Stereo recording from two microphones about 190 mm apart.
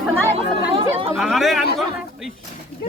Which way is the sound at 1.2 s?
Centre (ahead or behind).